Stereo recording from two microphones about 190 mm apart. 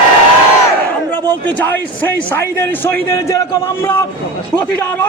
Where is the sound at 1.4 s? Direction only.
10° left (ahead or behind).